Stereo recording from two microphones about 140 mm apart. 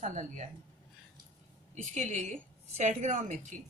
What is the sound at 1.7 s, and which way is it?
A woman's voice, 60° right (ahead or behind).